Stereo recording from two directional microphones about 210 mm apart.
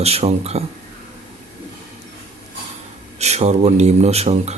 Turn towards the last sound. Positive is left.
turn(degrees=-30)  # may be behind; listen again after turning